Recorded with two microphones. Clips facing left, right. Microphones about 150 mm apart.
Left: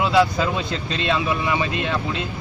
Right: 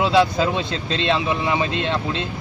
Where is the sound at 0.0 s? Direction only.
25° right (ahead or behind).